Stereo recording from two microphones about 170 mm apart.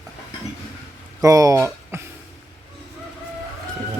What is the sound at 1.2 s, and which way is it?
Speech, 20° right (ahead or behind).